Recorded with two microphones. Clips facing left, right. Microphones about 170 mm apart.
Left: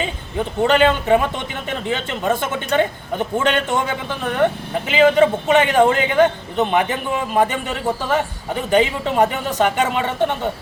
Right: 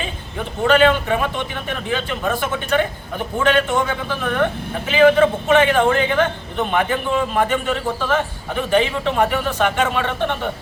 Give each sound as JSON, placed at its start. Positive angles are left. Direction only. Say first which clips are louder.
{"t": 0.7, "sound": "a man's voice", "louder": "even", "side_deg": 20}